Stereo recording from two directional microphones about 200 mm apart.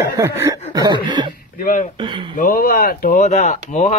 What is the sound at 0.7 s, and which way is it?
Speech, 20° right (ahead or behind).